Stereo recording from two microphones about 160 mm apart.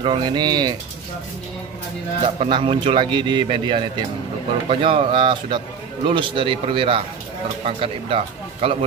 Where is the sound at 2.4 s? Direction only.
35° right (ahead or behind).